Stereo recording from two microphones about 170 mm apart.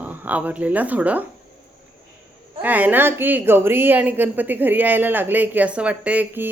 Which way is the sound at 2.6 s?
10° right (ahead or behind).